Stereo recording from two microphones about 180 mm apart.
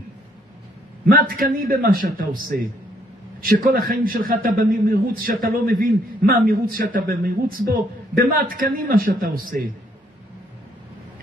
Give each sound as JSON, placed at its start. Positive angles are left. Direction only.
{"t": 1.0, "sound": "a man's voice", "side_deg": -55}